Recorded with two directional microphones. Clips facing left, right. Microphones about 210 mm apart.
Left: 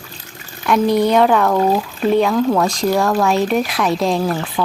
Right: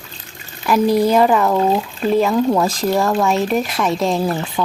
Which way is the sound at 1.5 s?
20° right (ahead or behind).